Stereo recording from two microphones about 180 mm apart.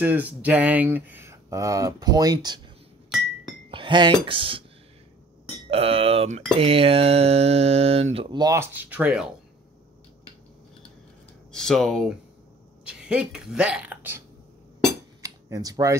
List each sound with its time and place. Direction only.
0.0 s speech: 10° right (ahead or behind)
3.7 s speech: 25° right (ahead or behind)
5.7 s speech: 35° right (ahead or behind); by 9.3 s 5° right (ahead or behind)
11.5 s speech: 5° left (ahead or behind)
15.2 s speech: 20° right (ahead or behind)